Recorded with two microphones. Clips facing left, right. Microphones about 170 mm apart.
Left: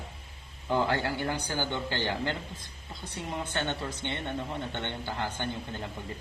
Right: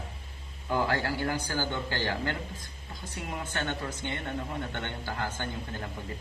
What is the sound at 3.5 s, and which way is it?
Speech, 20° left (ahead or behind).